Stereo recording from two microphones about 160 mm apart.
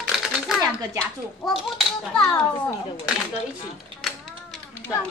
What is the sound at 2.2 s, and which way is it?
Speech, 20° left (ahead or behind).